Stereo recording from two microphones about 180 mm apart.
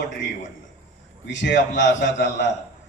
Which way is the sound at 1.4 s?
80° left.